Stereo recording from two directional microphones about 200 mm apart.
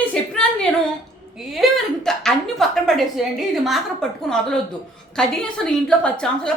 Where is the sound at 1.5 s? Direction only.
Centre (ahead or behind).